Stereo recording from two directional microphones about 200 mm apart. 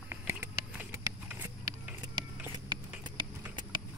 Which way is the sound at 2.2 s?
20° right (ahead or behind).